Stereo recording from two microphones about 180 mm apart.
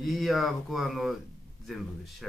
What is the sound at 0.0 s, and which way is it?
A man's voice, centre (ahead or behind).